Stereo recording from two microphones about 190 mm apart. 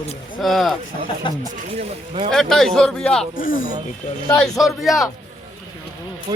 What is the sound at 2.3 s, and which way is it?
Speech, centre (ahead or behind).